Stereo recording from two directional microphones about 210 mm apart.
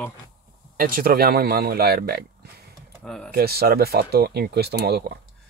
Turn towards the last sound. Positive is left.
turn(degrees=-50)  # may be behind; listen again after turning